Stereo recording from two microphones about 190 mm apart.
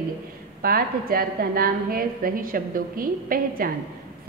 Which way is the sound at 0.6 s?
50° right (ahead or behind).